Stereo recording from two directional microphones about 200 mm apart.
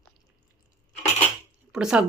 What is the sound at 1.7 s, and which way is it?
Speech, 5° right (ahead or behind).